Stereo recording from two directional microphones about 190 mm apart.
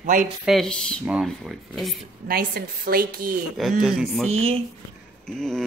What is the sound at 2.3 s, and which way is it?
A woman's voice, 50° right (ahead or behind).